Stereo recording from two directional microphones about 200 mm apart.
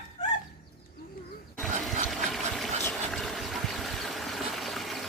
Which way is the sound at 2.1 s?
Centre (ahead or behind).